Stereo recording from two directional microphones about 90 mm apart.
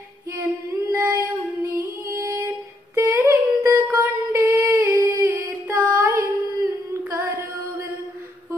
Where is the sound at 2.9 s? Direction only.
30° right (ahead or behind).